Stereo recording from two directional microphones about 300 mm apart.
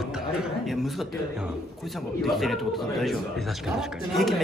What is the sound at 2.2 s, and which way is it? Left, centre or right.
A man's voice, centre.